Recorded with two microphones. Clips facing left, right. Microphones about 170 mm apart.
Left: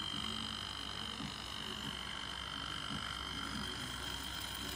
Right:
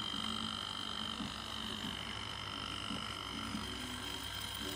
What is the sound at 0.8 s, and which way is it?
Frog, 15° left (ahead or behind).